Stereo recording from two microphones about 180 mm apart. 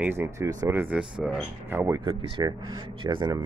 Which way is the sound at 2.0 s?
30° right (ahead or behind).